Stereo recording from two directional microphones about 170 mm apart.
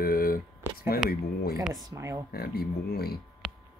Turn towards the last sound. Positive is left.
turn(degrees=65)  # may be behind; listen again after turning